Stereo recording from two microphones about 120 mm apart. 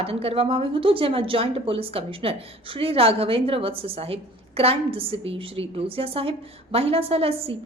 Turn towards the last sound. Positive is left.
turn(degrees=-55)  # may be behind; listen again after turning